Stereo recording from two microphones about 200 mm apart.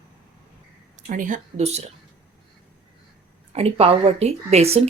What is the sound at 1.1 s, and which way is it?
Speech, 40° right (ahead or behind).